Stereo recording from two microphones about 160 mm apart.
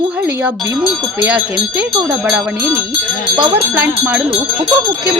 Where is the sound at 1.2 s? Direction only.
10° right (ahead or behind).